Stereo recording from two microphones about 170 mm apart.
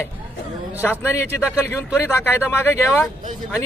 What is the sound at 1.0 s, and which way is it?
Speech, 15° left (ahead or behind).